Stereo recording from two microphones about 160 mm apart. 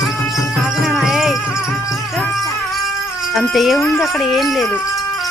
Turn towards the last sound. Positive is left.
turn(degrees=0)  # may be behind; listen again after turning